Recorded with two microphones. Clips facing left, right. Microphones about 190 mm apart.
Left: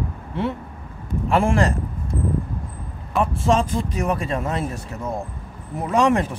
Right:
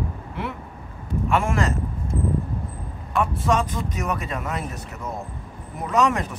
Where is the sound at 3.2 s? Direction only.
30° left (ahead or behind).